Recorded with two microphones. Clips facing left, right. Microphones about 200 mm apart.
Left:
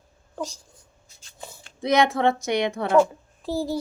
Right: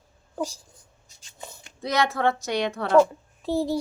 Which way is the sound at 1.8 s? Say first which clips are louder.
Left 4 dB; 15° left (ahead or behind).